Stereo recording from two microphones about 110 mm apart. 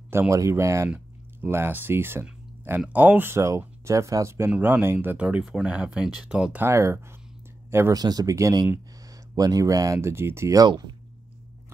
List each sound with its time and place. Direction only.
0.1 s speech: 25° right (ahead or behind)
4.5 s speech: 15° right (ahead or behind)
6.6 s speech: 25° right (ahead or behind)